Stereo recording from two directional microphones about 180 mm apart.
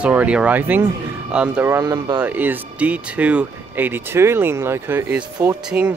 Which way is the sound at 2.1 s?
10° right (ahead or behind).